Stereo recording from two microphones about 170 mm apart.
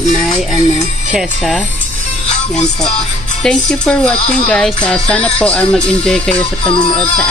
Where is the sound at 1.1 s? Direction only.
Centre (ahead or behind).